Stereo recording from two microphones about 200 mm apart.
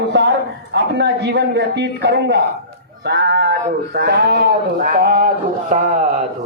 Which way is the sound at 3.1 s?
60° right (ahead or behind).